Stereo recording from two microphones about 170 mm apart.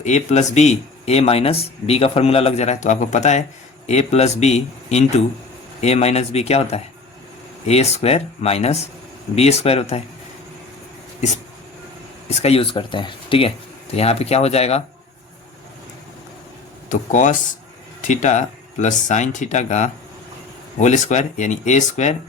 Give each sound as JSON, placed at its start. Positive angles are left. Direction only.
{"t": 0.0, "sound": "speech", "side_deg": 45}
{"t": 12.3, "sound": "speech", "side_deg": 35}
{"t": 16.9, "sound": "speech", "side_deg": 45}